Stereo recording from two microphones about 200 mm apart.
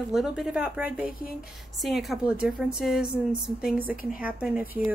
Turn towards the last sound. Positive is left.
turn(degrees=-5)  # may be behind; listen again after turning